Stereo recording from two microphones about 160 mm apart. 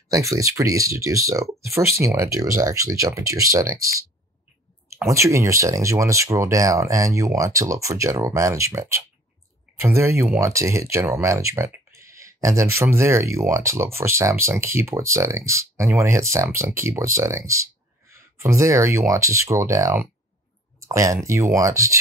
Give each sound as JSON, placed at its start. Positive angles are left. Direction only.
{"t": 0.1, "sound": "speech", "side_deg": -20}
{"t": 5.0, "sound": "speech", "side_deg": -20}